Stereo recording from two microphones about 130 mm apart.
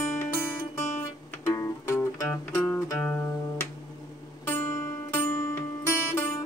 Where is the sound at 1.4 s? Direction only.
20° left (ahead or behind).